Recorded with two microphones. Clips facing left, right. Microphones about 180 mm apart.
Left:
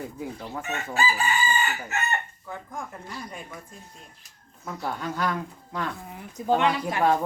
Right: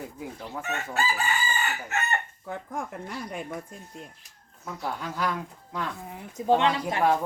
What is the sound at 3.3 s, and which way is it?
Speech, 65° right (ahead or behind).